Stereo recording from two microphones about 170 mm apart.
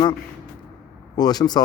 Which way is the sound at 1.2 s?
25° left (ahead or behind).